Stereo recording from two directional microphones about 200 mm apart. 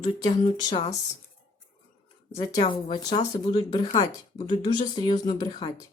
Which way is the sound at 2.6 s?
25° left (ahead or behind).